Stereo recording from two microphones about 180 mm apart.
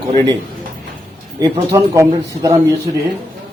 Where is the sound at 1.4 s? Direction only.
20° right (ahead or behind).